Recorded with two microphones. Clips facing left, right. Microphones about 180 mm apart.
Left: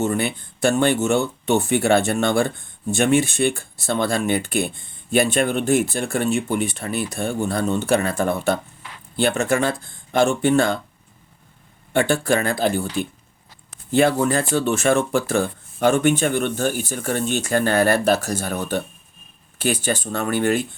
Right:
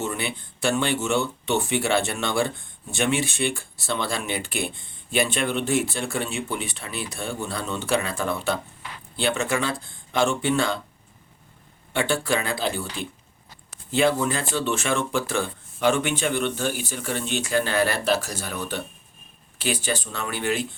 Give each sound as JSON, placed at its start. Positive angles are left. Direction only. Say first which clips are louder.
{"t": 0.0, "sound": "speech", "louder": "left 7 dB", "side_deg": 45}
{"t": 11.9, "sound": "speech", "louder": "left 5 dB", "side_deg": 50}